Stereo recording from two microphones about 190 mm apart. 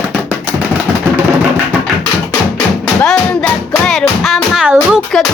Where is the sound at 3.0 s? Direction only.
5° left (ahead or behind).